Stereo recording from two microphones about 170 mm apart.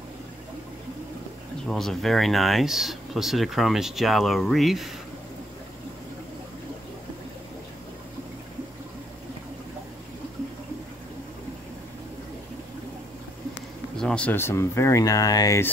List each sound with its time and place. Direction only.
1.7 s speech: centre (ahead or behind)
13.9 s speech: 5° left (ahead or behind)